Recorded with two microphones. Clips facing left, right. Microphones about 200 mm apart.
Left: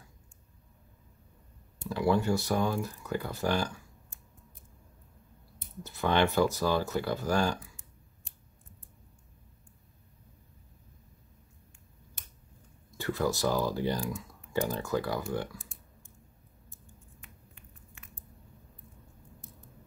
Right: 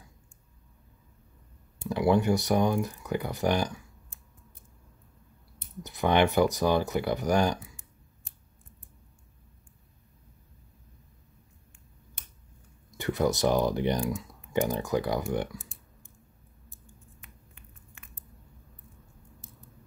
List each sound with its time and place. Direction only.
1.9 s speech: 15° right (ahead or behind)
5.8 s speech: 15° right (ahead or behind)
12.9 s speech: 20° right (ahead or behind)
14.0 s a sound: 25° right (ahead or behind)
14.7 s speech: 15° right (ahead or behind)